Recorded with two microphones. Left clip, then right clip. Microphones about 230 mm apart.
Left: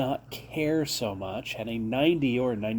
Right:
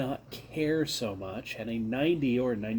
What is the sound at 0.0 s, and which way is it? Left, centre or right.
Speech, left.